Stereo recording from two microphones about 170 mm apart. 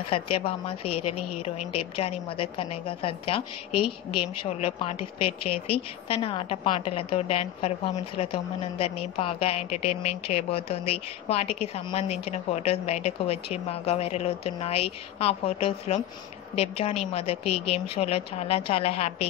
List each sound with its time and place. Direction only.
0.1 s a woman's voice: 35° left (ahead or behind)